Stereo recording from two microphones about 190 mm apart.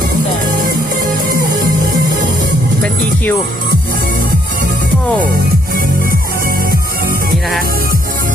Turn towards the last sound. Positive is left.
turn(degrees=-50)  # may be behind; listen again after turning